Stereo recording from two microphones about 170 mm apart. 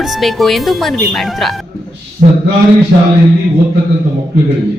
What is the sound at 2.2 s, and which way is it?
Speech, 45° right (ahead or behind).